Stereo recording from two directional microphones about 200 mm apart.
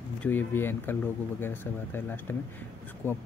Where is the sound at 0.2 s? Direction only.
10° left (ahead or behind).